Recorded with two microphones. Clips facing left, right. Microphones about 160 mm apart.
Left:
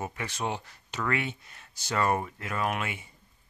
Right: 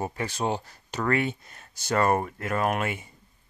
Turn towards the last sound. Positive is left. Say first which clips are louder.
# right 5 dB
turn(degrees=-45)  # may be behind; listen again after turning